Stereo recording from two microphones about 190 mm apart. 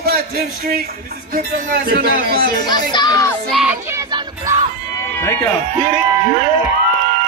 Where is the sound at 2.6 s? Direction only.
20° left (ahead or behind).